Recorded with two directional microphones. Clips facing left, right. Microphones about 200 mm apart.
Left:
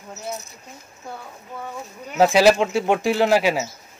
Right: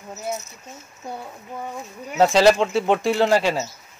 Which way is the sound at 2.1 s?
5° left (ahead or behind).